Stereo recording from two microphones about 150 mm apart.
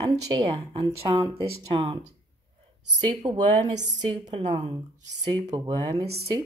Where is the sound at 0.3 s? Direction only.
40° right (ahead or behind).